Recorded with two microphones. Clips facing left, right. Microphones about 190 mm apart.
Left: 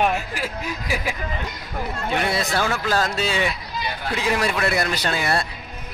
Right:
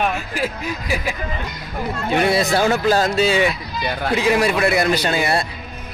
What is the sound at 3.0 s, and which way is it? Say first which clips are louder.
Speech: right 6 dB; 10° right (ahead or behind).